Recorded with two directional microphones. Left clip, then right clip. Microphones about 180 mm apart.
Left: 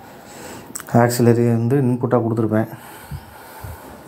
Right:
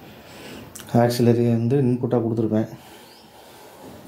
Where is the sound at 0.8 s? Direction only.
15° left (ahead or behind).